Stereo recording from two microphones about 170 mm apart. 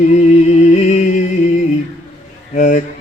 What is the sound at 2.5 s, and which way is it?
Mantra, 45° left (ahead or behind).